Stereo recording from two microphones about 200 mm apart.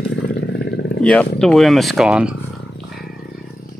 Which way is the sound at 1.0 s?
5° left (ahead or behind).